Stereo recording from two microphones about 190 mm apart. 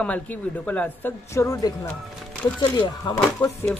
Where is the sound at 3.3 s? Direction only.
15° left (ahead or behind).